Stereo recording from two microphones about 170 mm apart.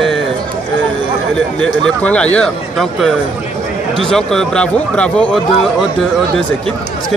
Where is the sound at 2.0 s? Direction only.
10° left (ahead or behind).